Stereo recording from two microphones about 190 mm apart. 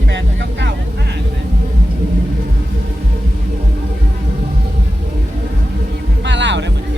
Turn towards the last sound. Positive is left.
turn(degrees=-70)  # may be behind; listen again after turning